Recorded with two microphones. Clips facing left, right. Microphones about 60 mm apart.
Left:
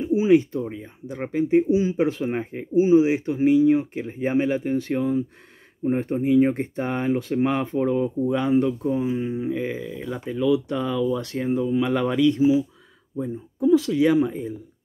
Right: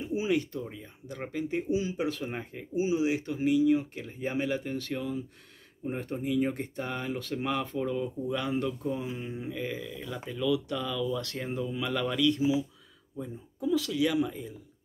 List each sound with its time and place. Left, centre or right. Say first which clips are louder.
0.0 s speech: left 11 dB; left